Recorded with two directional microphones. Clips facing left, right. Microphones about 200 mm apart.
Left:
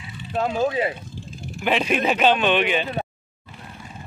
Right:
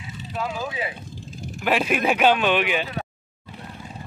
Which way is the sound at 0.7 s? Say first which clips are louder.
Left 7 dB; 40° left (ahead or behind).